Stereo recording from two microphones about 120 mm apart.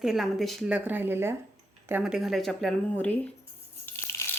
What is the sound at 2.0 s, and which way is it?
Speech, 5° right (ahead or behind).